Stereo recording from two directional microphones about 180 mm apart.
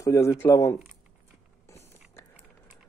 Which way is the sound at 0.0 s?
20° left (ahead or behind).